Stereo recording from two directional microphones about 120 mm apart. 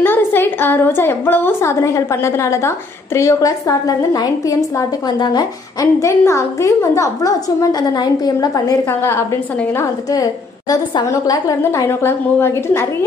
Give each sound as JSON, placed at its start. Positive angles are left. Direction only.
{"t": 0.0, "sound": "a woman's voice", "side_deg": 20}
{"t": 9.8, "sound": "a woman's voice", "side_deg": 30}